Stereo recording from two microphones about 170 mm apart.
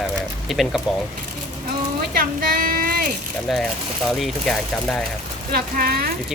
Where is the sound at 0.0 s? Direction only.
Centre (ahead or behind).